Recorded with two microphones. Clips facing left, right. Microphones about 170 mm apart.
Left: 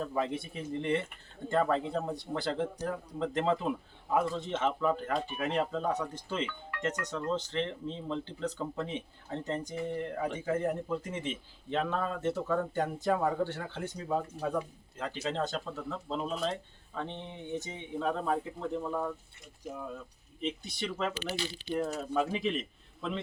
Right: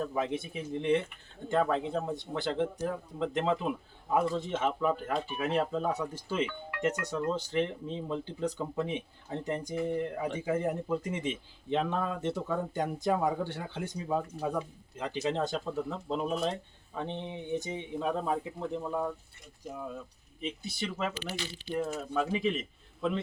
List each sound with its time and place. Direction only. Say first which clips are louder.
0.0 s speech: right 1 dB; 5° right (ahead or behind)
20.4 s speech: left 1 dB; 5° right (ahead or behind)